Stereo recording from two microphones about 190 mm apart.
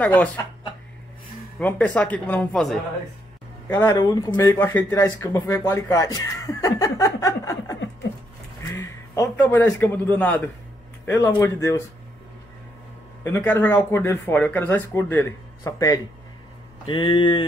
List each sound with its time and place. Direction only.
0.0 s a man's voice: 10° left (ahead or behind)
1.6 s a man's voice: 10° left (ahead or behind)
13.2 s a man's voice: 10° left (ahead or behind)